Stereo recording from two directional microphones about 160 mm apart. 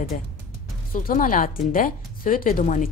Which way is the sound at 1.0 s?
60° left (ahead or behind).